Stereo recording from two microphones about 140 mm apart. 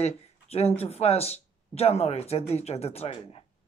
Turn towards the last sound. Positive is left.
turn(degrees=45)  # may be behind; listen again after turning